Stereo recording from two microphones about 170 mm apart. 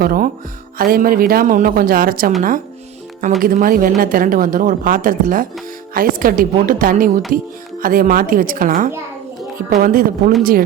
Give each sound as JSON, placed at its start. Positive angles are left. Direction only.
{"t": 0.0, "sound": "a woman's voice", "side_deg": -60}
{"t": 3.4, "sound": "a woman's voice", "side_deg": -55}